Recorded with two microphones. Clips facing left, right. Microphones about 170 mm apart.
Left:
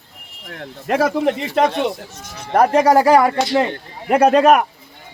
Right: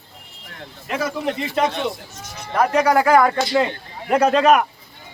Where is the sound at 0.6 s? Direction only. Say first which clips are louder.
Left 7 dB; 55° left (ahead or behind).